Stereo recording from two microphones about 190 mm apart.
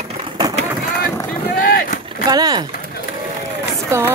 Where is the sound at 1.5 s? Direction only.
45° left (ahead or behind).